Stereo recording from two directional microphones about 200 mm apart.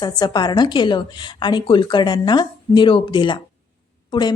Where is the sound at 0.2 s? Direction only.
20° left (ahead or behind).